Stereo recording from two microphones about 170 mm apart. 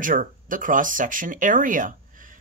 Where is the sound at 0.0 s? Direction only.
50° right (ahead or behind).